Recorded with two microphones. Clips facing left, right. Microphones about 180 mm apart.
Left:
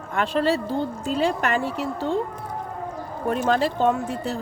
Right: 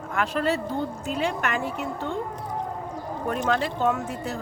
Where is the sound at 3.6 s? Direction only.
30° left (ahead or behind).